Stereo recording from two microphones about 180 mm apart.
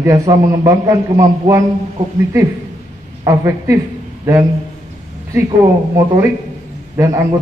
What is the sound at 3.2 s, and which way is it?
Speech, 15° right (ahead or behind).